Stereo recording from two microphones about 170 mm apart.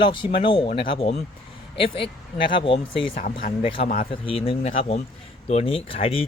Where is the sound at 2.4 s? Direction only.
30° left (ahead or behind).